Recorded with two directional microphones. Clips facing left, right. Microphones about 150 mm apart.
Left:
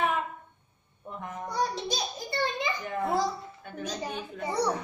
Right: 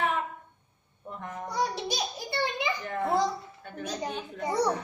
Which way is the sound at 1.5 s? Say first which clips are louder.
Even; 10° right (ahead or behind).